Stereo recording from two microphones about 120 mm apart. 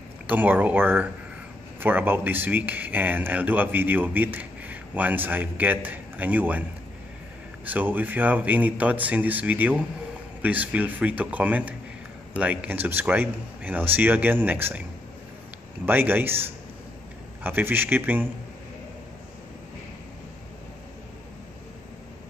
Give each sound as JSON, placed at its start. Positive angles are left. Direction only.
{"t": 0.3, "sound": "speech", "side_deg": -15}
{"t": 7.6, "sound": "speech", "side_deg": -15}